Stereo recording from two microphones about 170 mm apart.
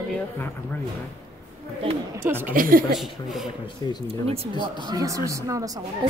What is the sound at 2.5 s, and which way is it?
Speech, 55° right (ahead or behind).